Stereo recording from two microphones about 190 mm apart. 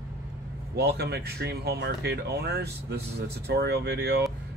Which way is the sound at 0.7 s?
60° right (ahead or behind).